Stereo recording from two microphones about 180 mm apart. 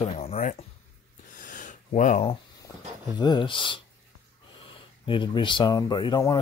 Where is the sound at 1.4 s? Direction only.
45° left (ahead or behind).